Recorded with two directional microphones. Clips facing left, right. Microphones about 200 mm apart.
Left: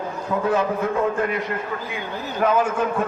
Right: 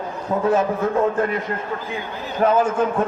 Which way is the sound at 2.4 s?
35° right (ahead or behind).